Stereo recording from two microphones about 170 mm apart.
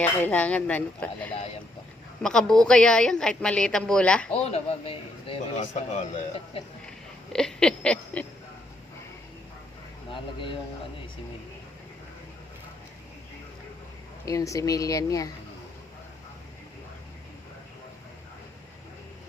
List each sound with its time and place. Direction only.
0.0 s a woman's voice: 10° left (ahead or behind)
4.4 s speech: 35° left (ahead or behind)
7.3 s a woman's voice: 5° left (ahead or behind)
10.1 s speech: 30° left (ahead or behind)
14.3 s speech: 20° left (ahead or behind)